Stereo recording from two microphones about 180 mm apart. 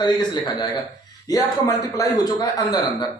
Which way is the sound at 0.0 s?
25° left (ahead or behind).